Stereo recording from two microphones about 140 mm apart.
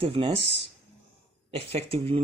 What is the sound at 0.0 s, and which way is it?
Speech, 40° right (ahead or behind).